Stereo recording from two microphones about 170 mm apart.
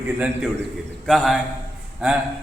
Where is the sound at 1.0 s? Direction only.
Centre (ahead or behind).